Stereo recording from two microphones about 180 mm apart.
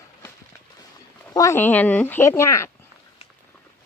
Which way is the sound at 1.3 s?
15° left (ahead or behind).